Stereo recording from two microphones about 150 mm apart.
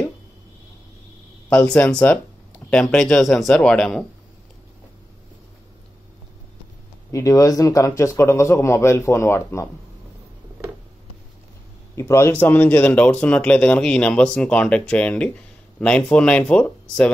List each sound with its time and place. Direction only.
1.5 s speech: 5° left (ahead or behind)
7.1 s a man's voice: 20° left (ahead or behind)
11.9 s speech: 20° left (ahead or behind)